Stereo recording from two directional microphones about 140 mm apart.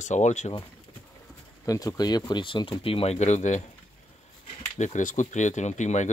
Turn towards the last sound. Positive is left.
turn(degrees=60)  # may be behind; listen again after turning